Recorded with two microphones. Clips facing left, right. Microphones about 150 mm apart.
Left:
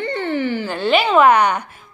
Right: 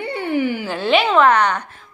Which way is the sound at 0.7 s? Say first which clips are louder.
Left 2 dB; centre (ahead or behind).